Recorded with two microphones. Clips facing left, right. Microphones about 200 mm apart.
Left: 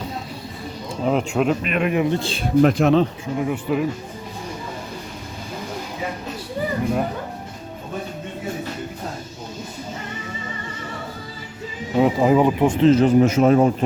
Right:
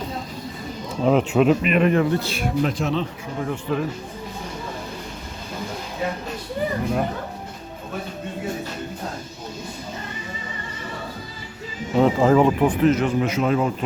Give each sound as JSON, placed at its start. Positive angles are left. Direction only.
{"t": 1.0, "sound": "speech", "side_deg": 0}
{"t": 1.9, "sound": "speech", "side_deg": 15}
{"t": 2.1, "sound": "speech", "side_deg": 30}
{"t": 2.6, "sound": "speech", "side_deg": 60}
{"t": 3.3, "sound": "speech", "side_deg": 10}
{"t": 11.9, "sound": "speech", "side_deg": 15}